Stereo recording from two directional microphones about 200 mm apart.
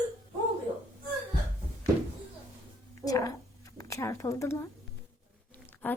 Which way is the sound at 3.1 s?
15° left (ahead or behind).